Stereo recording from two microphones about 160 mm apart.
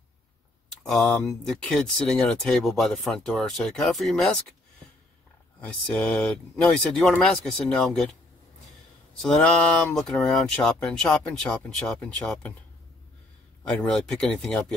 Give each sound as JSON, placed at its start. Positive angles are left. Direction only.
{"t": 0.8, "sound": "speech", "side_deg": 5}
{"t": 5.6, "sound": "speech", "side_deg": 10}
{"t": 9.9, "sound": "speech", "side_deg": 5}
{"t": 13.7, "sound": "speech", "side_deg": 5}